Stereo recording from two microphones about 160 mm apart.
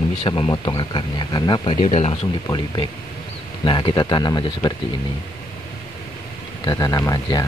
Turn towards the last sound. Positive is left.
turn(degrees=25)  # may be behind; listen again after turning